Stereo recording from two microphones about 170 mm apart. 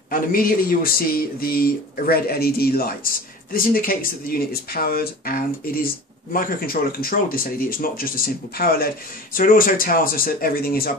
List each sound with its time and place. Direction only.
0.1 s speech: 60° left (ahead or behind)